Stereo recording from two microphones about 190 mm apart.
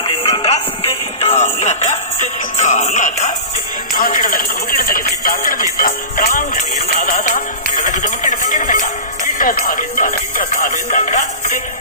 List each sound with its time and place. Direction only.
0.0 s music: 30° left (ahead or behind)
3.9 s speech: 45° left (ahead or behind)